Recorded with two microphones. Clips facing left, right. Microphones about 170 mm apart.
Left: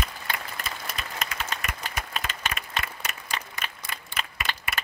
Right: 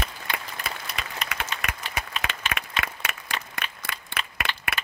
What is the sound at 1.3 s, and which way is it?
Applause, 65° right (ahead or behind).